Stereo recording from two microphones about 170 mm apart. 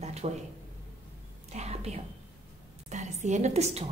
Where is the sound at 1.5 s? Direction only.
40° right (ahead or behind).